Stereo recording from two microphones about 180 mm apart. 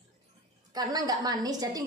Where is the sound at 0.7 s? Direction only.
20° right (ahead or behind).